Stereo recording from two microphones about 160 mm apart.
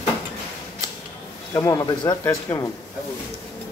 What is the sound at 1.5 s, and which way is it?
Speech, 20° left (ahead or behind).